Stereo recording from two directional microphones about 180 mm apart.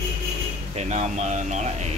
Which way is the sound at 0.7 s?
40° right (ahead or behind).